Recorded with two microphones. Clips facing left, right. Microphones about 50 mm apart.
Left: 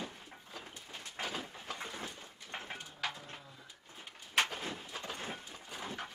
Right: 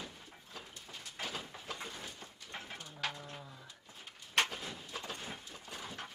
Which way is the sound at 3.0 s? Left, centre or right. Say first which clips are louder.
Even; centre.